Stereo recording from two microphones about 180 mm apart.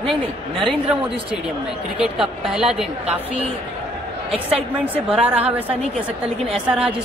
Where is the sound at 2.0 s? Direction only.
5° right (ahead or behind).